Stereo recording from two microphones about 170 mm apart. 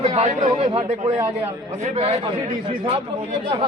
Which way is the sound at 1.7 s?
40° right (ahead or behind).